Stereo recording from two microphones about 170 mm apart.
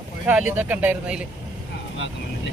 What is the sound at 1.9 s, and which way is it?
Speech, 90° left.